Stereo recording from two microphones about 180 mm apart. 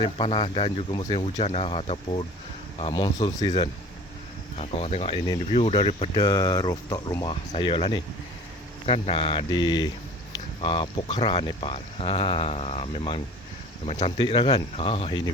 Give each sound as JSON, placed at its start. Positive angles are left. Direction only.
{"t": 0.0, "sound": "speech", "side_deg": 25}
{"t": 3.2, "sound": "speech", "side_deg": 40}
{"t": 4.5, "sound": "speech", "side_deg": 35}
{"t": 6.1, "sound": "speech", "side_deg": 20}
{"t": 7.5, "sound": "speech", "side_deg": 30}